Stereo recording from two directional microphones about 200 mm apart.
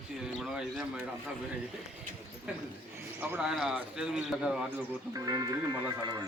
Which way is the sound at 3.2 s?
5° right (ahead or behind).